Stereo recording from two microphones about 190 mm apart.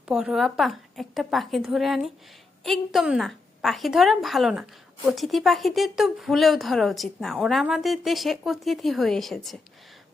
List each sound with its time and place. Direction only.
0.0 s speech: 5° right (ahead or behind)